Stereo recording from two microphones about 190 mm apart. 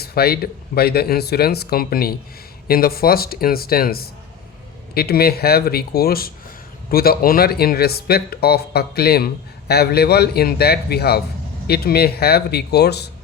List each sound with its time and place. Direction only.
0.0 s speech: 55° left (ahead or behind)